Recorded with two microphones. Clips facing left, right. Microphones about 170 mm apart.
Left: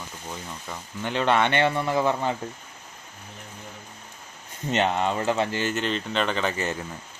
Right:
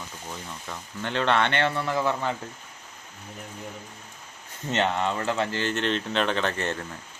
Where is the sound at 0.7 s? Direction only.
10° left (ahead or behind).